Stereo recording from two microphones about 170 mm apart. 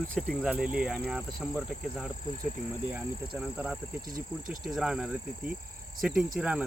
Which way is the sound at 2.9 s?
10° right (ahead or behind).